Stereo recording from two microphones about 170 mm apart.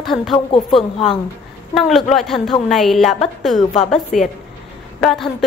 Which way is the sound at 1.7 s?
Centre (ahead or behind).